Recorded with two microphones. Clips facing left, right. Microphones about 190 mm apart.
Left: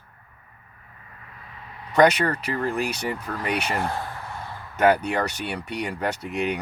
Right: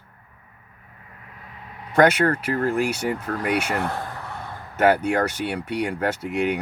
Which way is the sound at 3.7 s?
60° right (ahead or behind).